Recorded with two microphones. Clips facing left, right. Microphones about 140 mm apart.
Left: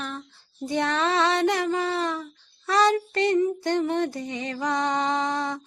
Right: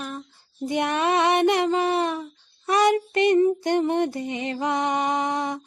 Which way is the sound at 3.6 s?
20° right (ahead or behind).